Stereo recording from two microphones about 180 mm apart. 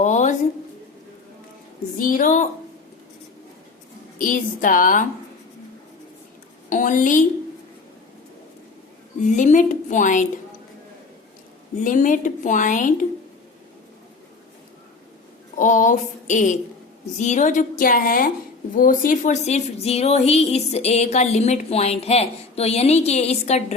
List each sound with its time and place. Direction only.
0.0 s a sound: 40° left (ahead or behind)
2.0 s a woman's voice: 50° left (ahead or behind)
4.2 s a woman's voice: 45° left (ahead or behind)
6.7 s a woman's voice: 45° left (ahead or behind)
9.3 s a woman's voice: 45° left (ahead or behind)
11.8 s a woman's voice: 45° left (ahead or behind)
15.5 s a woman's voice: 45° left (ahead or behind)